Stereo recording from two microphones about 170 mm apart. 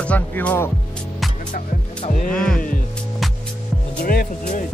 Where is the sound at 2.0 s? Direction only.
45° left (ahead or behind).